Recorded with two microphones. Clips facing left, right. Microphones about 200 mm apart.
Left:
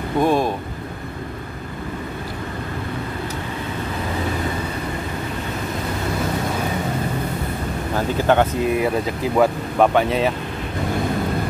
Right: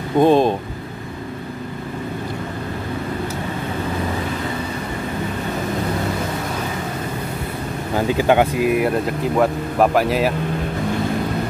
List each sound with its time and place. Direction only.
0.2 s speech: 25° right (ahead or behind)
8.2 s speech: 10° right (ahead or behind)